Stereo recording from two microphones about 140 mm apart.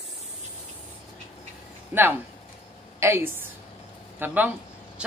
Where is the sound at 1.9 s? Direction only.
15° right (ahead or behind).